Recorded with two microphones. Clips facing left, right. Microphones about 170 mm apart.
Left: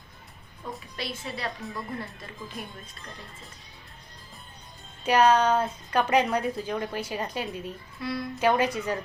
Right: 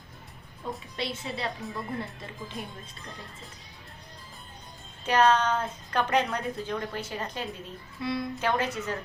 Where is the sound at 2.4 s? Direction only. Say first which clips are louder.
Even; centre (ahead or behind).